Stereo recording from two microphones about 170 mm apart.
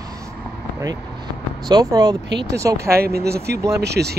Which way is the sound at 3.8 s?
75° right (ahead or behind).